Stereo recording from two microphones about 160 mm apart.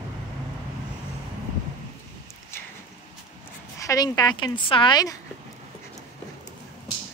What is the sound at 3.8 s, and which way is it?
A woman's voice, 25° left (ahead or behind).